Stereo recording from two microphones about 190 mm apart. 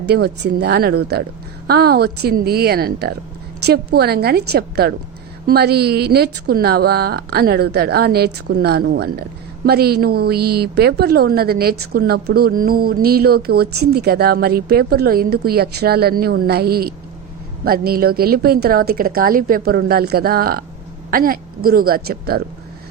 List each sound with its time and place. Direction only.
0.1 s a woman's voice: 60° right (ahead or behind)